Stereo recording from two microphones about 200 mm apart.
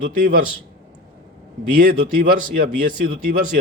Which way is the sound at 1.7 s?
45° right (ahead or behind).